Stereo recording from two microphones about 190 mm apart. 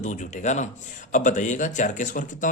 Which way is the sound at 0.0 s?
40° left (ahead or behind).